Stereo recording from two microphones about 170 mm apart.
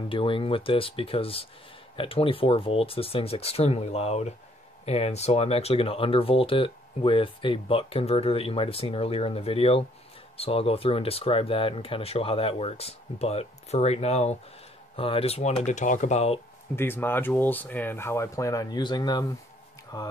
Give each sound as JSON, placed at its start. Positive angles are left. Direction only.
{"t": 0.1, "sound": "speech", "side_deg": 30}
{"t": 16.7, "sound": "speech", "side_deg": 15}